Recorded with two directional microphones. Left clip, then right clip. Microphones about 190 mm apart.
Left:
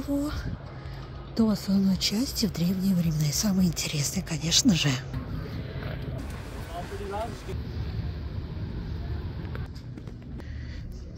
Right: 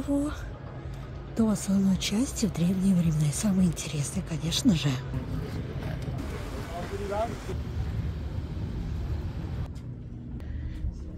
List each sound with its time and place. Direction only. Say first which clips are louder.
0.0 s speech: right 1 dB; 5° right (ahead or behind)